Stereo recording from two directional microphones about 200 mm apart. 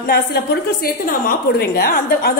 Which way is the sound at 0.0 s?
50° left (ahead or behind).